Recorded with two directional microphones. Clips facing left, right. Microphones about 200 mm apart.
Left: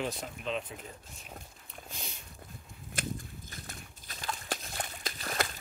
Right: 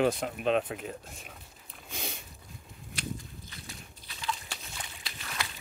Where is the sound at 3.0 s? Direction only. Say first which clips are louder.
Left 1 dB; 50° left (ahead or behind).